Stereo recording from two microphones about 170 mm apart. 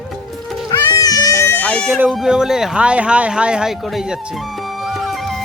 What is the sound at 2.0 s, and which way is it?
Speech, centre (ahead or behind).